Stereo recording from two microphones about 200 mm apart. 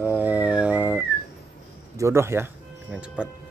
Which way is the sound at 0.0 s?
10° right (ahead or behind).